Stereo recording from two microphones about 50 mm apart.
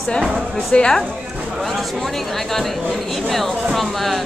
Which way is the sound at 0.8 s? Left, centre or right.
Centre.